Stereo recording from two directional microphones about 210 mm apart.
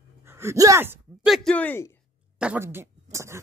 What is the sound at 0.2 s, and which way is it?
Speech, 10° right (ahead or behind).